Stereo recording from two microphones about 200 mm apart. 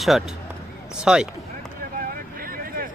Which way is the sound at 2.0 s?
45° right (ahead or behind).